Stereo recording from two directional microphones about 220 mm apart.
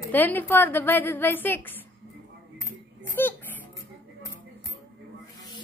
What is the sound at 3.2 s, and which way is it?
Speech, 10° left (ahead or behind).